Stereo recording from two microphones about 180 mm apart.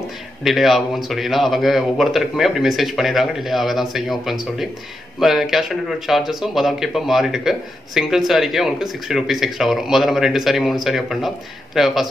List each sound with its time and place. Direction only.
0.4 s speech: centre (ahead or behind)